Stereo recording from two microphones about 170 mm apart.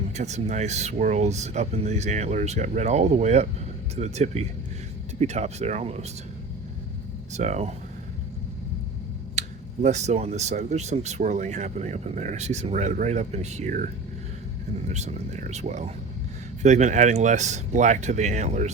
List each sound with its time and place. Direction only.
0.2 s speech: 40° right (ahead or behind)
7.3 s speech: 45° right (ahead or behind)
9.8 s speech: 45° right (ahead or behind)